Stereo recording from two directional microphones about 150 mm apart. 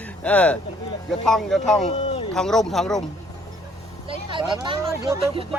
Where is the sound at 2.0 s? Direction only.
45° left (ahead or behind).